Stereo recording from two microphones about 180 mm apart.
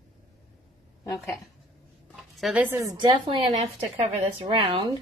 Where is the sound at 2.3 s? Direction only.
Centre (ahead or behind).